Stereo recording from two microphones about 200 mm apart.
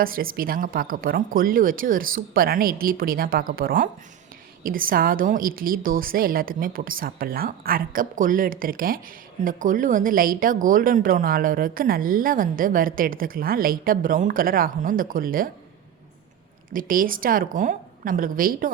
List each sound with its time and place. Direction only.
0.0 s speech: 45° right (ahead or behind)
16.7 s speech: 45° right (ahead or behind)